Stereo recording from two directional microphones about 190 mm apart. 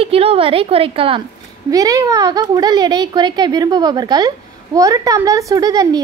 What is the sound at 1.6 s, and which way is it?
Speech, 20° right (ahead or behind).